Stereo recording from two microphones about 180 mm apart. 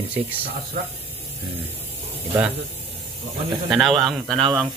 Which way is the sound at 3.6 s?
Centre (ahead or behind).